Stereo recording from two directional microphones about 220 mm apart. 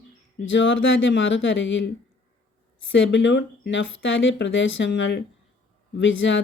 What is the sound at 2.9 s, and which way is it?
Speech, 55° left (ahead or behind).